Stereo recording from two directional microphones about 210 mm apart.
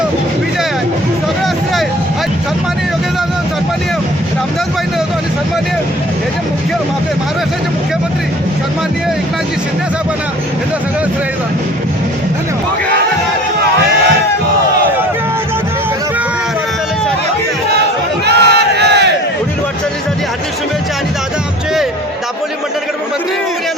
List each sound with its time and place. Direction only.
18.3 s crowd: 55° right (ahead or behind)